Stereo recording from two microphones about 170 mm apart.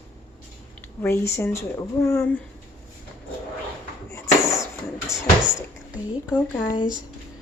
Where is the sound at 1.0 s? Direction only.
15° left (ahead or behind).